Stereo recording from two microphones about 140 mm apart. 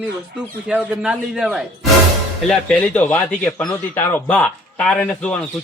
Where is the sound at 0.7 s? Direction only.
10° right (ahead or behind).